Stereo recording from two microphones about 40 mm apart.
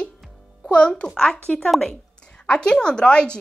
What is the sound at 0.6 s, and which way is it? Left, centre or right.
A child's voice, left.